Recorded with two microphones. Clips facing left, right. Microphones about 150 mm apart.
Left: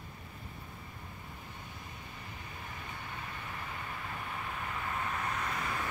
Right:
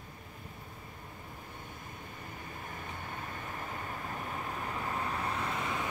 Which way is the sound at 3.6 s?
40° right (ahead or behind).